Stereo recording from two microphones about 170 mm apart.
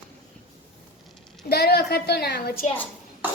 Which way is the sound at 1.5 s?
70° left (ahead or behind).